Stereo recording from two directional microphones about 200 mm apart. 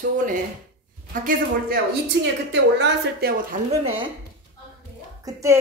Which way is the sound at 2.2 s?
65° right (ahead or behind).